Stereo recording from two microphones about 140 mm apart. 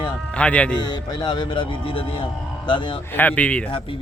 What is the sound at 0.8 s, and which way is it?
A man's voice, 30° left (ahead or behind).